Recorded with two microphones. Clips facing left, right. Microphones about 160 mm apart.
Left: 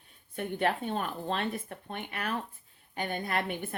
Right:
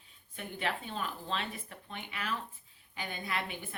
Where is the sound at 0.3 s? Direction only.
55° left (ahead or behind).